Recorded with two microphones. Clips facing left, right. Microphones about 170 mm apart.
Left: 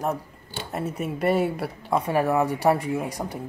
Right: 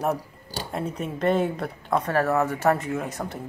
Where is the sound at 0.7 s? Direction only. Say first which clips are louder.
Left 1 dB; 5° left (ahead or behind).